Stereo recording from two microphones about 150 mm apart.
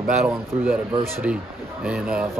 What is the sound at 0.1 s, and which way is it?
A man's voice, 5° right (ahead or behind).